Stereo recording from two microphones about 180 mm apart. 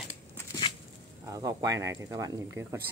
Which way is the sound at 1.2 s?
20° right (ahead or behind).